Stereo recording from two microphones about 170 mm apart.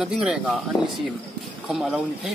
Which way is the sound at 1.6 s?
5° right (ahead or behind).